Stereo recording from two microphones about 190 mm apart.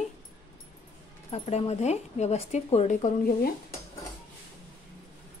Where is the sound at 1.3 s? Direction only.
35° left (ahead or behind).